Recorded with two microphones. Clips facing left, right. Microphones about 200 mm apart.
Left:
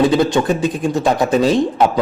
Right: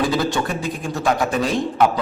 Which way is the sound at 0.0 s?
25° left (ahead or behind).